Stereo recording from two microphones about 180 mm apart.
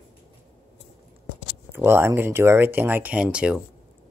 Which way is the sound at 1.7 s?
10° right (ahead or behind).